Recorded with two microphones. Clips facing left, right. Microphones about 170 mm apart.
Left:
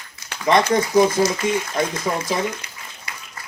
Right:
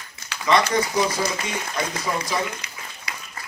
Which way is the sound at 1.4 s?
50° left (ahead or behind).